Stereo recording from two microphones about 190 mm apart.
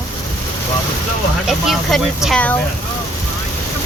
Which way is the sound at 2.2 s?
5° left (ahead or behind).